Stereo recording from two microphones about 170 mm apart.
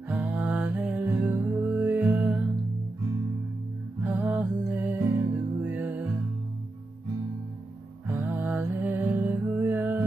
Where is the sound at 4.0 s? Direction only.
10° right (ahead or behind).